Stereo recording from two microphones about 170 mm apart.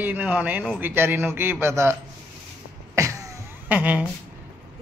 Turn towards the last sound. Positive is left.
turn(degrees=-10)  # may be behind; listen again after turning